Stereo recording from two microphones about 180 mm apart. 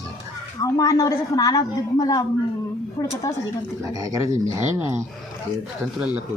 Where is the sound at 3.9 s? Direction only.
20° right (ahead or behind).